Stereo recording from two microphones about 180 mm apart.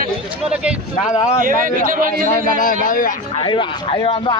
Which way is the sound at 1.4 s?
50° right (ahead or behind).